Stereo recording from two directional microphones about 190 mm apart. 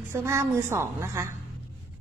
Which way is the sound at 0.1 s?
15° right (ahead or behind).